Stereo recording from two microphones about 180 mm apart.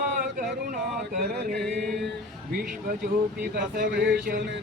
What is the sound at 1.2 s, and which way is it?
Mantra, 65° right (ahead or behind).